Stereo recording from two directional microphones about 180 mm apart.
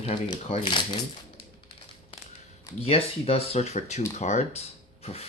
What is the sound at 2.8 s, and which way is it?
Speech, 35° left (ahead or behind).